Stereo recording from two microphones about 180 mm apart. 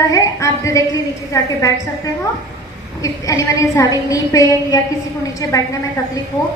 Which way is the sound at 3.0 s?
20° left (ahead or behind).